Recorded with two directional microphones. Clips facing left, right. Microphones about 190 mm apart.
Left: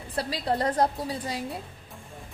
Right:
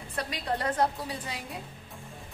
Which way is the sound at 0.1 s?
30° left (ahead or behind).